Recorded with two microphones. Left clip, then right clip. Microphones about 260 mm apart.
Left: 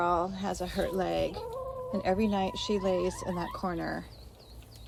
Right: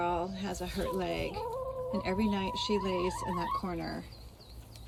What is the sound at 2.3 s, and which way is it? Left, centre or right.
Speech, left.